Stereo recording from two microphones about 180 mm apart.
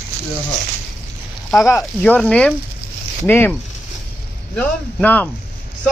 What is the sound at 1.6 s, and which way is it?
Speech, 10° left (ahead or behind).